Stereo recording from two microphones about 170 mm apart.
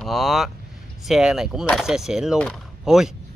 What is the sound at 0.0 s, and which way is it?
Speech, centre (ahead or behind).